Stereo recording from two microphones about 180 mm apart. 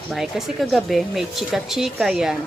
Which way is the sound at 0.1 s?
Centre (ahead or behind).